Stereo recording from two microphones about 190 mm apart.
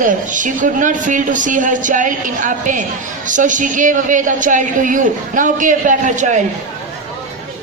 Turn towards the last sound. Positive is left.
turn(degrees=-40)  # may be behind; listen again after turning